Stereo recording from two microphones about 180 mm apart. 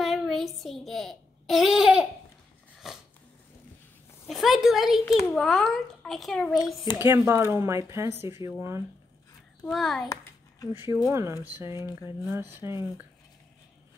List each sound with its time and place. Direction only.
0.0 s a sound: centre (ahead or behind)
4.3 s a woman's voice: centre (ahead or behind)
7.0 s speech: 15° right (ahead or behind)
9.7 s a child's voice: centre (ahead or behind)
10.7 s speech: 15° right (ahead or behind)